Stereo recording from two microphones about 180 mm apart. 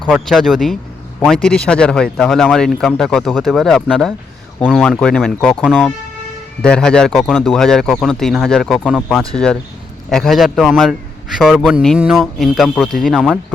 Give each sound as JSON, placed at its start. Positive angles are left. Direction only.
{"t": 0.1, "sound": "a man's voice", "side_deg": 0}